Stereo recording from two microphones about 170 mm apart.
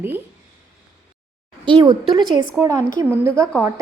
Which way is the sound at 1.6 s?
25° right (ahead or behind).